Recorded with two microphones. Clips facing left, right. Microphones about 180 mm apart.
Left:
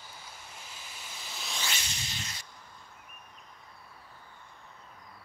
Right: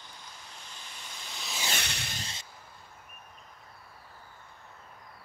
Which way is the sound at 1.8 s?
65° right (ahead or behind).